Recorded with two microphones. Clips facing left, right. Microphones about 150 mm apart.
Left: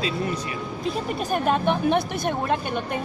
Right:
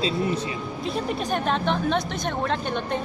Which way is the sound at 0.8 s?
5° left (ahead or behind).